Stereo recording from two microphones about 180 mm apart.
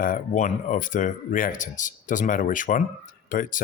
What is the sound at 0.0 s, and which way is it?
Speech, 50° left (ahead or behind).